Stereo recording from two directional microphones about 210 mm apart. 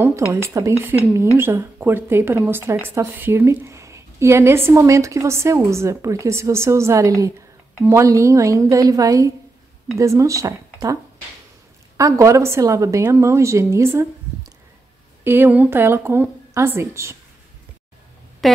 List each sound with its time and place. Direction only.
0.3 s speech: 15° right (ahead or behind)
12.0 s speech: 15° right (ahead or behind)
15.2 s speech: 10° right (ahead or behind)
18.4 s speech: centre (ahead or behind)